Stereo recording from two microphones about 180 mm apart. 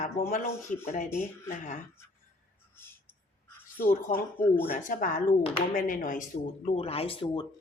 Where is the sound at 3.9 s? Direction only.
45° left (ahead or behind).